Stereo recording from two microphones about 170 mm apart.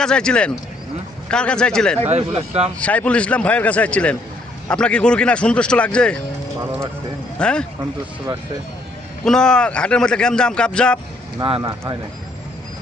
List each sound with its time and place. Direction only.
0.0 s speech: 5° left (ahead or behind)
2.0 s speech: 40° right (ahead or behind)
2.8 s a man's voice: 10° left (ahead or behind)
7.3 s speech: 5° left (ahead or behind)
9.2 s speech: 5° left (ahead or behind)
11.4 s speech: 30° right (ahead or behind)